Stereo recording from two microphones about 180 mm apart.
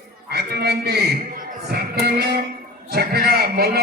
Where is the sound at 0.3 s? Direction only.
60° right (ahead or behind).